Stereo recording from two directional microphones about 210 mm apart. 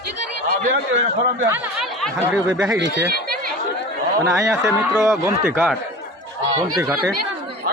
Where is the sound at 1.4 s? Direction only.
10° right (ahead or behind).